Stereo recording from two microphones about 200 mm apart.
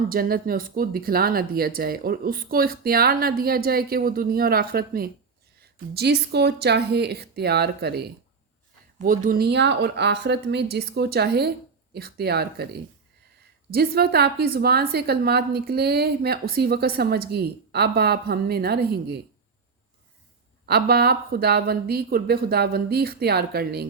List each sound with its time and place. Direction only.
0.1 s a woman's voice: 45° right (ahead or behind)
20.7 s a woman's voice: 50° right (ahead or behind)